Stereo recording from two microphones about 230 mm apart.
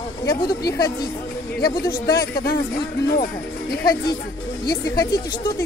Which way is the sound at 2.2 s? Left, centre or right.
Left.